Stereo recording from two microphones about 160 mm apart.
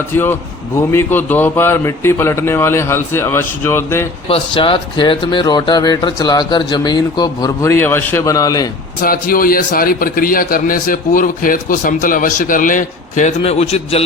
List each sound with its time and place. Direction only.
0.1 s a man's voice: 15° left (ahead or behind)
4.3 s speech: 35° left (ahead or behind)
9.0 s a man's voice: 60° left (ahead or behind); by 14.0 s 40° left (ahead or behind)